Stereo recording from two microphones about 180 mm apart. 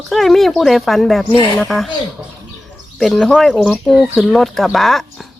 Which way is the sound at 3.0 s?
Centre (ahead or behind).